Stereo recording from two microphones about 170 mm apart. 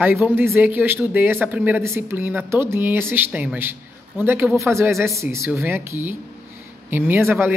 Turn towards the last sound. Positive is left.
turn(degrees=-15)  # may be behind; listen again after turning